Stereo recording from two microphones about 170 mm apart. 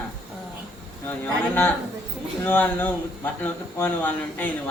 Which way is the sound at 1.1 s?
10° left (ahead or behind).